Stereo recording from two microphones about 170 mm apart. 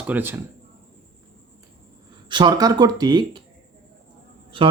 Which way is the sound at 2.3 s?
25° right (ahead or behind).